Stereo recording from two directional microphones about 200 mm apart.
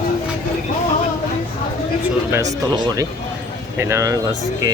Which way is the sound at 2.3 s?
15° right (ahead or behind).